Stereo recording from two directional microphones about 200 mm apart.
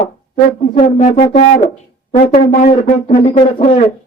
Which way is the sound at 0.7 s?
35° left (ahead or behind).